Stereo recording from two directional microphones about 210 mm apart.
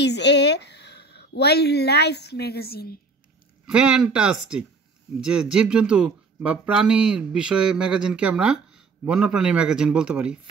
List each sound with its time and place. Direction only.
0.0 s a woman's voice: 55° left (ahead or behind)
3.6 s speech: 5° right (ahead or behind)